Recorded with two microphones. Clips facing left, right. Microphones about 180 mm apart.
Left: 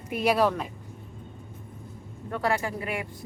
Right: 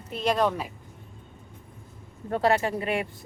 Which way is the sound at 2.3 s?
25° right (ahead or behind).